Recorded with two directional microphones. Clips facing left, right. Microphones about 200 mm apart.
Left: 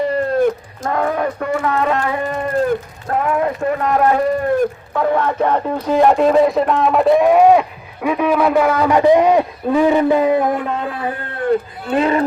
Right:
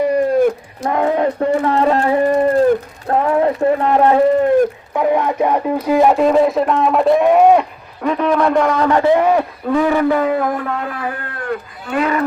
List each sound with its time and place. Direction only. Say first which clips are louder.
0.1 s cat: right 2 dB; 10° right (ahead or behind)
0.8 s a sound: right 4 dB; 20° right (ahead or behind)
3.6 s speech: right 3 dB; 30° right (ahead or behind)
4.9 s a man's voice: right 1 dB; 15° right (ahead or behind); by 12.2 s 30° left (ahead or behind)